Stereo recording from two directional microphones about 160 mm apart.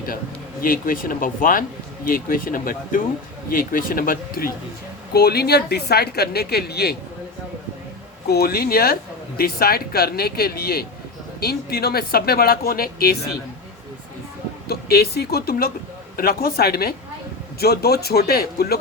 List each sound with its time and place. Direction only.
0.6 s speech: 60° left (ahead or behind)
5.1 s a woman's voice: 80° left
8.3 s speech: 75° left (ahead or behind)
14.7 s a woman's voice: 80° left